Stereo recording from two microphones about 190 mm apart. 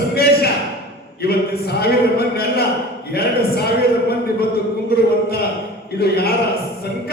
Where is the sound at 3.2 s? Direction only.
55° left (ahead or behind).